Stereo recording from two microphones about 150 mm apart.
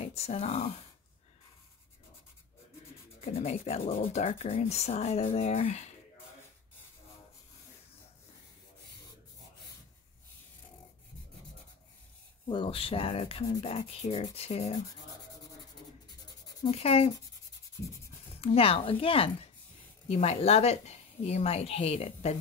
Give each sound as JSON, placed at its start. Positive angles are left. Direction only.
{"t": 0.0, "sound": "speech", "side_deg": 45}
{"t": 3.3, "sound": "a woman's voice", "side_deg": 45}
{"t": 3.8, "sound": "speech", "side_deg": 70}
{"t": 4.1, "sound": "a woman's voice", "side_deg": 45}
{"t": 12.4, "sound": "a woman's voice", "side_deg": 35}
{"t": 16.7, "sound": "a woman's voice", "side_deg": 45}
{"t": 18.4, "sound": "a woman's voice", "side_deg": 40}